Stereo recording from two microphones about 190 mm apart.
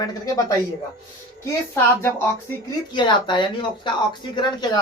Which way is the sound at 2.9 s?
25° left (ahead or behind).